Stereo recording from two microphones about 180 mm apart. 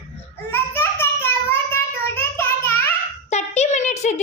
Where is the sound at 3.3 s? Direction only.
40° left (ahead or behind).